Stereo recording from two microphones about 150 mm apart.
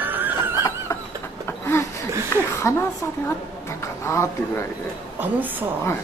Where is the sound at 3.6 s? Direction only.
20° left (ahead or behind).